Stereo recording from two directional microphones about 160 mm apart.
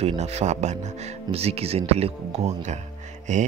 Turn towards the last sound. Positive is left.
turn(degrees=-50)  # may be behind; listen again after turning